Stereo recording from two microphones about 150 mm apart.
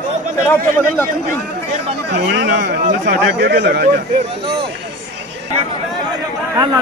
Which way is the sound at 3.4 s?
90° right.